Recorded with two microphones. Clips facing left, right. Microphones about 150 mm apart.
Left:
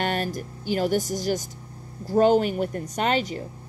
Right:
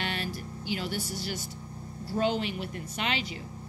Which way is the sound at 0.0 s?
45° left (ahead or behind).